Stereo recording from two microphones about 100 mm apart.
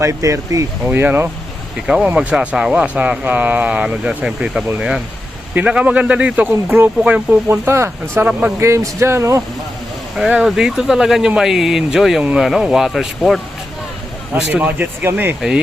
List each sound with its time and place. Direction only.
0.0 s speech: 30° right (ahead or behind)
0.9 s speech: 20° right (ahead or behind)
1.9 s speech: 10° right (ahead or behind)
8.6 s speech: 30° right (ahead or behind)
10.2 s speech: 10° right (ahead or behind)
14.3 s speech: 15° right (ahead or behind)
15.4 s speech: 5° right (ahead or behind)